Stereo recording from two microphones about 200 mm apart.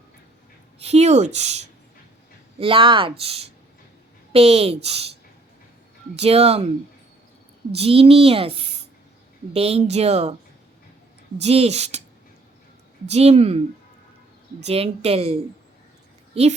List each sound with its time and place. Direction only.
0.8 s a child's voice: 30° right (ahead or behind)
6.1 s speech: 30° right (ahead or behind)
7.7 s a child's voice: 30° right (ahead or behind)
11.3 s speech: 30° right (ahead or behind)
13.1 s speech: 30° right (ahead or behind)
14.6 s a woman's voice: 30° right (ahead or behind)